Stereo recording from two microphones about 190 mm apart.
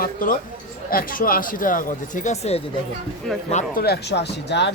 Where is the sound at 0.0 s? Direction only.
45° left (ahead or behind).